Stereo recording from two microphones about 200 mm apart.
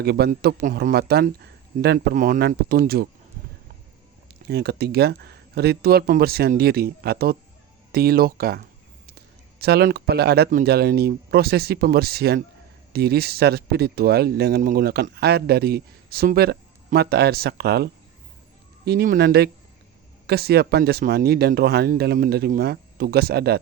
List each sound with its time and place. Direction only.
0.0 s speech: 55° right (ahead or behind)
4.4 s speech: 55° right (ahead or behind)
18.9 s speech: 50° right (ahead or behind)